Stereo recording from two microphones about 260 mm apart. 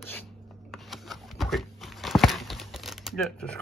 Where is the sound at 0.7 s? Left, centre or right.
Centre.